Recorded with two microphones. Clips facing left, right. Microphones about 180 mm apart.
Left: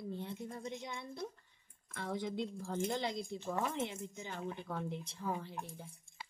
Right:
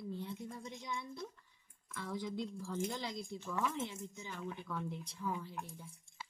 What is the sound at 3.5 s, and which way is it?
Speech, 45° left (ahead or behind).